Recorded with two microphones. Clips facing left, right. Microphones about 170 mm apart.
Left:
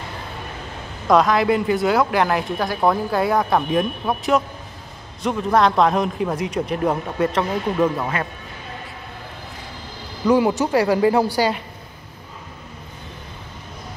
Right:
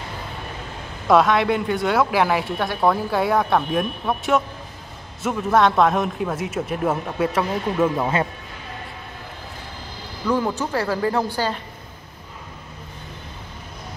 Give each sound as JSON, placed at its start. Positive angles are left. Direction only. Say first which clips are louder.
{"t": 1.0, "sound": "speech", "louder": "even", "side_deg": 0}
{"t": 8.0, "sound": "speech", "louder": "right 3 dB", "side_deg": -20}
{"t": 10.2, "sound": "speech", "louder": "left 5 dB", "side_deg": 15}